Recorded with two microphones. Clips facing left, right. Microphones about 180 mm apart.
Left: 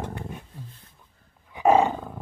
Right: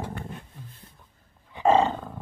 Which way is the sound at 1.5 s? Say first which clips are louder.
Left 1 dB; 10° left (ahead or behind).